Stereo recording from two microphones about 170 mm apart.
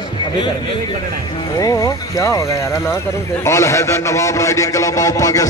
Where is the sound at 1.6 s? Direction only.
20° left (ahead or behind).